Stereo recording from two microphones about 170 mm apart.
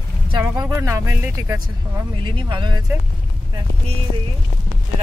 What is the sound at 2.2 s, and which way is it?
Speech, 30° right (ahead or behind).